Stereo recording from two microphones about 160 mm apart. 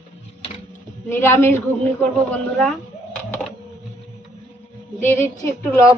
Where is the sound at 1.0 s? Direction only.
15° left (ahead or behind).